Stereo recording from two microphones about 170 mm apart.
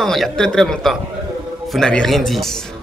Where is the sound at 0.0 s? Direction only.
Centre (ahead or behind).